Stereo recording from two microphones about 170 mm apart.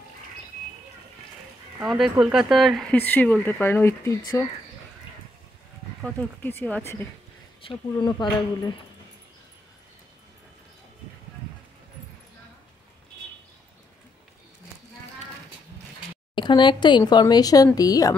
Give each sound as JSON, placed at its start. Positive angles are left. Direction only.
{"t": 1.8, "sound": "speech", "side_deg": -5}
{"t": 6.0, "sound": "speech", "side_deg": 10}
{"t": 7.6, "sound": "speech", "side_deg": 25}
{"t": 16.3, "sound": "speech", "side_deg": 25}